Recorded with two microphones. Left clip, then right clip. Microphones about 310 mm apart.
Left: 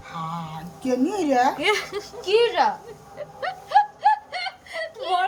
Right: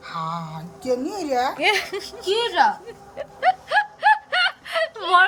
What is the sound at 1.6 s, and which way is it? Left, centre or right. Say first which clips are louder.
Speech: right 2 dB; centre.